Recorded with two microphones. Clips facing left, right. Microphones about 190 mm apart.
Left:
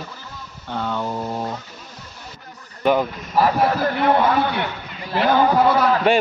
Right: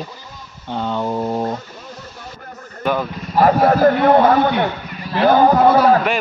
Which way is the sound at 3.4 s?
50° right (ahead or behind).